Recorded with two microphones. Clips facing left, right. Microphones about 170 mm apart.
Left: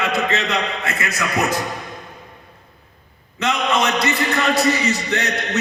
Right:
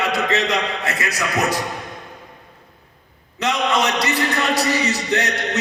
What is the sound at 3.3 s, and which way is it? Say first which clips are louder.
A man's voice: even; 35° right (ahead or behind).